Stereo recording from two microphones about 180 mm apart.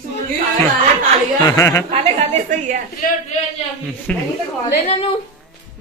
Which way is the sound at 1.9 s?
40° right (ahead or behind).